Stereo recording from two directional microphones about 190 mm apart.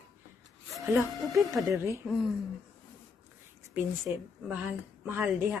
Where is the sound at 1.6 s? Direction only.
15° right (ahead or behind).